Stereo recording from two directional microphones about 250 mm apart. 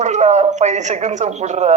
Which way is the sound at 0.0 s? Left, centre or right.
Right.